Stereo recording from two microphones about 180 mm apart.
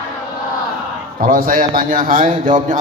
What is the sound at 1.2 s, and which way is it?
Speech, 50° right (ahead or behind).